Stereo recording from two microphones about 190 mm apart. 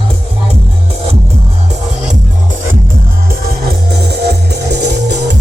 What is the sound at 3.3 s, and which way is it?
Music, 55° right (ahead or behind).